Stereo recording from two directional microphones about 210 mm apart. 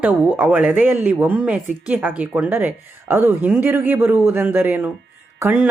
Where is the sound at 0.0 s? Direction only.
5° right (ahead or behind).